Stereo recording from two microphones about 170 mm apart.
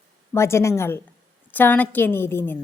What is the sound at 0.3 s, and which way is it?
A woman's voice, 15° left (ahead or behind).